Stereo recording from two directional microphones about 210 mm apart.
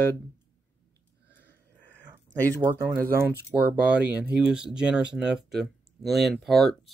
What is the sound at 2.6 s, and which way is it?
Speech, 15° right (ahead or behind).